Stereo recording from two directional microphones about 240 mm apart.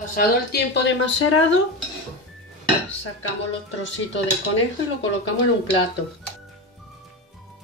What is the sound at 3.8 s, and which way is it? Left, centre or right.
Speech, left.